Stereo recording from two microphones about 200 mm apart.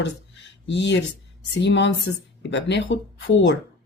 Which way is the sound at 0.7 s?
60° left (ahead or behind).